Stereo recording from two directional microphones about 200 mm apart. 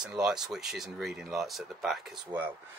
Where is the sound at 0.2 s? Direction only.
5° right (ahead or behind).